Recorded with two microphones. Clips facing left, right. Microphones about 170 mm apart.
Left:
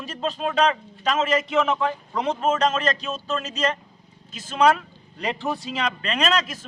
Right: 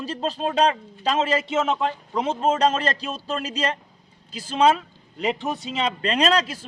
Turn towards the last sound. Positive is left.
turn(degrees=-30)  # may be behind; listen again after turning